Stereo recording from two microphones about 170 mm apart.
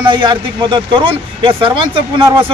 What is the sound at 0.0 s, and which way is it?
Speech, 25° right (ahead or behind).